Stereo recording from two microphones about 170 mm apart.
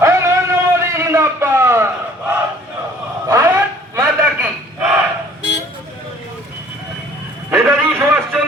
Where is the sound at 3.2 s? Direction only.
15° right (ahead or behind).